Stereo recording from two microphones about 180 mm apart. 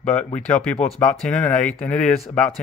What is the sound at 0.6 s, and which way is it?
Speech, 5° left (ahead or behind).